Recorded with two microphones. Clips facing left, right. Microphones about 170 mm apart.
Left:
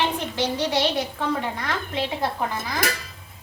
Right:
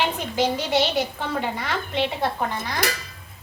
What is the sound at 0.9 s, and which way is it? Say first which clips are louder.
Speech: even; 5° right (ahead or behind).